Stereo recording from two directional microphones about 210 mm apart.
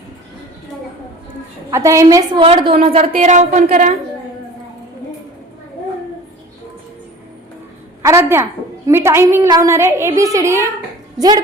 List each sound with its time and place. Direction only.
1.7 s a woman's voice: 15° right (ahead or behind)
2.4 s a woman's voice: 25° right (ahead or behind)
8.0 s a woman's voice: 10° right (ahead or behind)